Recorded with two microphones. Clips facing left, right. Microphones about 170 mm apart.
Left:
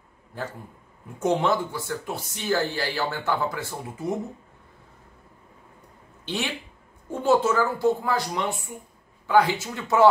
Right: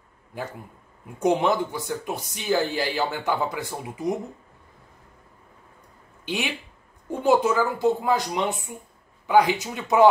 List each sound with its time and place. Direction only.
0.3 s speech: 15° right (ahead or behind)
6.2 s speech: 15° right (ahead or behind)